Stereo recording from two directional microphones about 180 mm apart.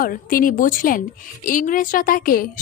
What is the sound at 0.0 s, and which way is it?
A woman's voice, 50° left (ahead or behind).